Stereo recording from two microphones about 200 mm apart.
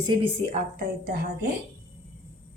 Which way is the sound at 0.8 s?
50° right (ahead or behind).